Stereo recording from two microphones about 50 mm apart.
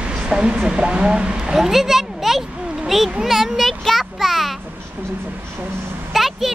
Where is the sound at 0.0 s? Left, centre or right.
Right.